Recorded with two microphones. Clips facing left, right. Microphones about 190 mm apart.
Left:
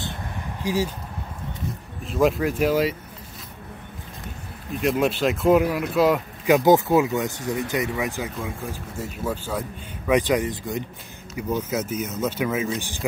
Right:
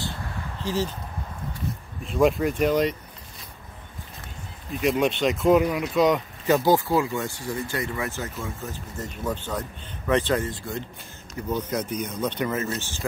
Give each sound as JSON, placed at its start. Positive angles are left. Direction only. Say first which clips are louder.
{"t": 0.0, "sound": "a sound", "louder": "left 1 dB", "side_deg": 15}
{"t": 2.0, "sound": "speech", "louder": "even", "side_deg": 0}
{"t": 4.7, "sound": "speech", "louder": "left 1 dB", "side_deg": 0}